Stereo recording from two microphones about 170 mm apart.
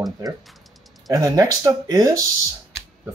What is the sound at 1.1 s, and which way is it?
Speech, 20° right (ahead or behind).